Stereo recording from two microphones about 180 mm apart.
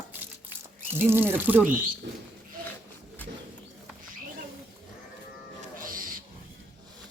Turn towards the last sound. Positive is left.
turn(degrees=-50)  # may be behind; listen again after turning